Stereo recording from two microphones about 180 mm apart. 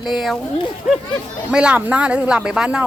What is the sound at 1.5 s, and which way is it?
Speech, 5° right (ahead or behind).